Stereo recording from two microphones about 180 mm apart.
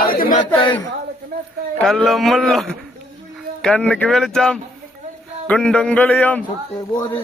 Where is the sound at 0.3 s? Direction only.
25° left (ahead or behind).